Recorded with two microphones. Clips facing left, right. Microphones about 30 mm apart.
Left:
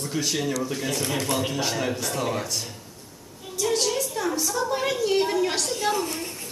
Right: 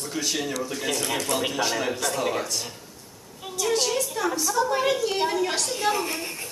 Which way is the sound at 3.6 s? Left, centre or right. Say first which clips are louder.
Even; centre.